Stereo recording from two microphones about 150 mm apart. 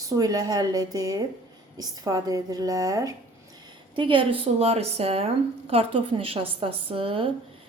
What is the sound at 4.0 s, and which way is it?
A woman's voice, 35° right (ahead or behind).